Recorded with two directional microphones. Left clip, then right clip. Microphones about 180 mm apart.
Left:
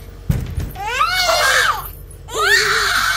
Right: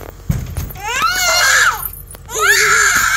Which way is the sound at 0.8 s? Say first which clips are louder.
Right 1 dB; 10° left (ahead or behind).